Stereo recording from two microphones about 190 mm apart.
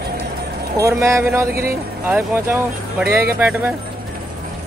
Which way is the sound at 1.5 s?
50° right (ahead or behind).